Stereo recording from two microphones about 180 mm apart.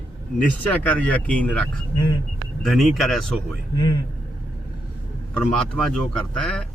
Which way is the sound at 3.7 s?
25° left (ahead or behind).